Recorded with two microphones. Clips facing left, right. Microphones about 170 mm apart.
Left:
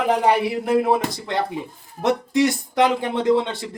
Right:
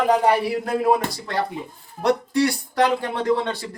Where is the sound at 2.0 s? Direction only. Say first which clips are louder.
Left 1 dB; 20° left (ahead or behind).